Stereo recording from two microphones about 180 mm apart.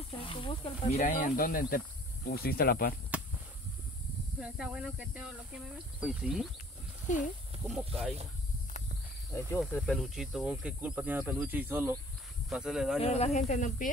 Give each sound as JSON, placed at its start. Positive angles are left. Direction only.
{"t": 0.2, "sound": "speech", "side_deg": 30}
{"t": 4.4, "sound": "insect", "side_deg": -5}
{"t": 7.6, "sound": "insect", "side_deg": 0}
{"t": 9.3, "sound": "insect", "side_deg": 15}
{"t": 13.0, "sound": "speech", "side_deg": 35}